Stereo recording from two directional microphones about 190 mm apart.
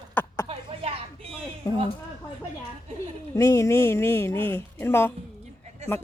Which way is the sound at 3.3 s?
15° left (ahead or behind).